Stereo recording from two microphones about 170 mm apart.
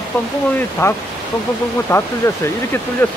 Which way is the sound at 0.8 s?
15° left (ahead or behind).